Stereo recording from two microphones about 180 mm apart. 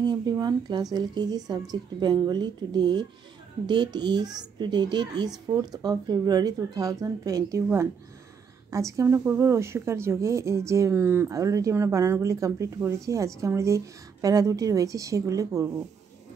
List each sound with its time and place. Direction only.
0.0 s a child's voice: 25° right (ahead or behind)